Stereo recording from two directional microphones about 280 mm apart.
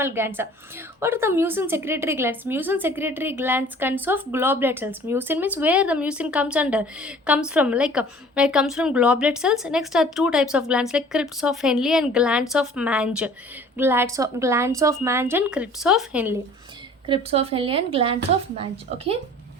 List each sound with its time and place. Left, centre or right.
0.0 s a woman's voice: centre
17.1 s speech: right